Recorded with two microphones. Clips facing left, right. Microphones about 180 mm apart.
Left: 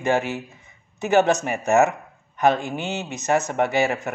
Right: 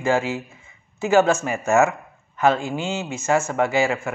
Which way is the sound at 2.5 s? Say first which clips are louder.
Right 2 dB; 20° left (ahead or behind).